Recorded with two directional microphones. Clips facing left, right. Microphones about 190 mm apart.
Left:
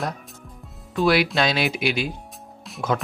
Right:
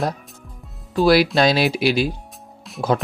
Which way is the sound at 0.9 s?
35° right (ahead or behind).